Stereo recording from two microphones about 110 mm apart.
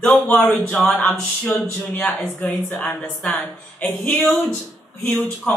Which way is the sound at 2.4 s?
15° left (ahead or behind).